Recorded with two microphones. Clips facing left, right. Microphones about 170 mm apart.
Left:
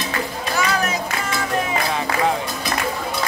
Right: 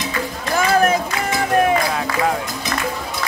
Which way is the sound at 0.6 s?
50° right (ahead or behind).